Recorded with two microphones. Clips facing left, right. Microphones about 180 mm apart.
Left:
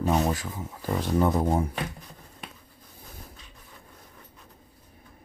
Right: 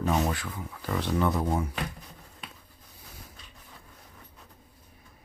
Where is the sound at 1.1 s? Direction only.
30° left (ahead or behind).